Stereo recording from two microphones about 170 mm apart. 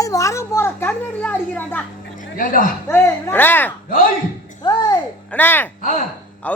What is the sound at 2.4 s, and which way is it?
Speech, 50° left (ahead or behind).